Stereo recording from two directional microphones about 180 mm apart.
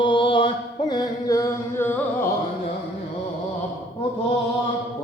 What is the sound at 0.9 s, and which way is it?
Music, 20° left (ahead or behind).